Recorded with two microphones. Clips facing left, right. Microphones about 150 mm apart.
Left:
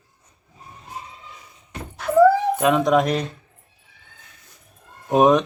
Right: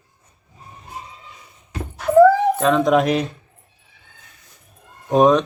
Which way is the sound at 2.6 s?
10° left (ahead or behind).